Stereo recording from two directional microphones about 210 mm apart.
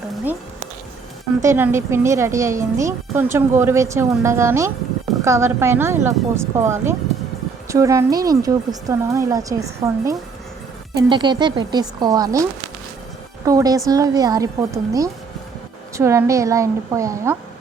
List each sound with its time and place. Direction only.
1.4 s speech: 10° right (ahead or behind)